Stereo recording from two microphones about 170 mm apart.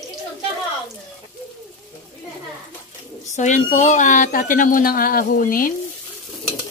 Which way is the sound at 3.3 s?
45° left (ahead or behind).